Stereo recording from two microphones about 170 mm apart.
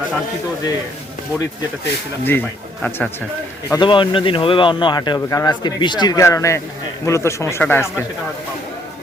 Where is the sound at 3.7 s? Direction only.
30° left (ahead or behind); by 8.1 s 15° left (ahead or behind).